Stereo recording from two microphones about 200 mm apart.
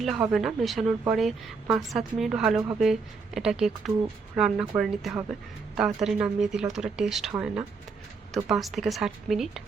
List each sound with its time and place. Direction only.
0.0 s a woman's voice: centre (ahead or behind)
5.7 s a woman's voice: centre (ahead or behind)